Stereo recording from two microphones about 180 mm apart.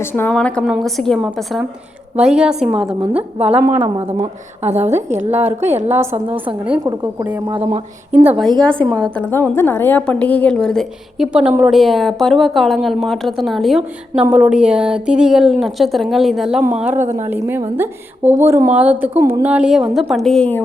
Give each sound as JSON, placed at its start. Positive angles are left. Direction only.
{"t": 0.0, "sound": "a woman's voice", "side_deg": 10}
{"t": 3.8, "sound": "speech", "side_deg": -30}
{"t": 5.9, "sound": "a woman's voice", "side_deg": -15}
{"t": 6.2, "sound": "a woman's voice", "side_deg": -30}
{"t": 6.8, "sound": "a woman's voice", "side_deg": -20}
{"t": 8.6, "sound": "a woman's voice", "side_deg": 5}